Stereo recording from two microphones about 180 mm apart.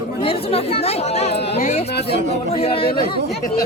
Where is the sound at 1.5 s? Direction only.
35° left (ahead or behind).